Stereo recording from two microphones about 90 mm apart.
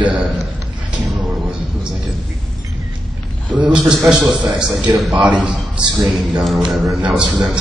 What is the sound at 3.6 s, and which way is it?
A man's voice, 5° right (ahead or behind).